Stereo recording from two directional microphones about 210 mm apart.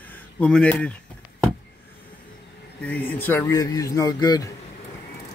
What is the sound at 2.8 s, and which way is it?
Speech, 5° left (ahead or behind).